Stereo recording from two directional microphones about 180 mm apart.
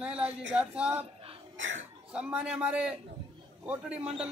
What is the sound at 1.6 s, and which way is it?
Speech, 90° right.